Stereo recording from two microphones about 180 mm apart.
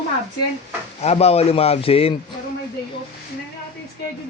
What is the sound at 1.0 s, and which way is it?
A man's voice, 35° left (ahead or behind).